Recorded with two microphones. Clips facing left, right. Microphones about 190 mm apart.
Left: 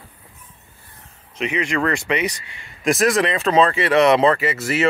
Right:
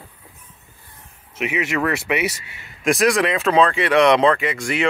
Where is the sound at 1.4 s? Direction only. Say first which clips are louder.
Even; 5° right (ahead or behind).